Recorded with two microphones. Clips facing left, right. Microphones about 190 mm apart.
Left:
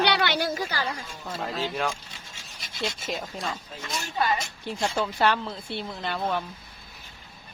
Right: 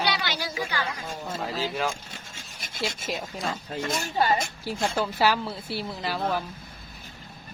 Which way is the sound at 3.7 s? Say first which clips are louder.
Right 6 dB; 50° right (ahead or behind).